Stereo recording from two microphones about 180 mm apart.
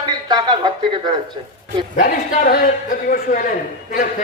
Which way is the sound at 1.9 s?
50° left (ahead or behind).